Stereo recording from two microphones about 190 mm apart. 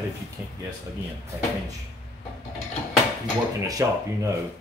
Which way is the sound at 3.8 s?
15° right (ahead or behind).